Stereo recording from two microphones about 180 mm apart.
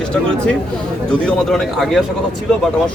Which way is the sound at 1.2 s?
5° left (ahead or behind).